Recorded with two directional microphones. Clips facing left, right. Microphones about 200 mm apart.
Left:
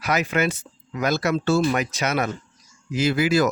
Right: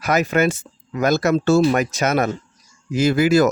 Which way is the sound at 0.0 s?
45° right (ahead or behind).